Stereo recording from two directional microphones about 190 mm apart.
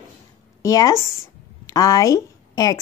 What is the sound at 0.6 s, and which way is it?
A woman's voice, 20° left (ahead or behind).